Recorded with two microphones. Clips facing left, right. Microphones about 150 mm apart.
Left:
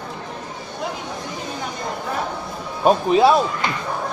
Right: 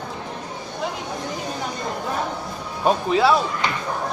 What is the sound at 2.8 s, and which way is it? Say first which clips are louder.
Music: left 4 dB; 20° left (ahead or behind).